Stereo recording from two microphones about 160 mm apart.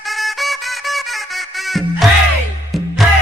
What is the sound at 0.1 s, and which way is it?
Music, centre (ahead or behind).